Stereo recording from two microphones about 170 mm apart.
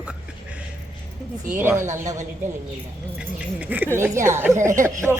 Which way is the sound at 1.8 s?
45° right (ahead or behind).